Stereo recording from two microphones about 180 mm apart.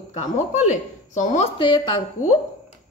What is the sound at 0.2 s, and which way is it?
Speech, 40° left (ahead or behind).